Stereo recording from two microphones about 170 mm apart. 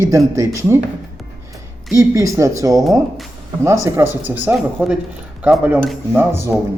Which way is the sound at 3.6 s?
15° right (ahead or behind).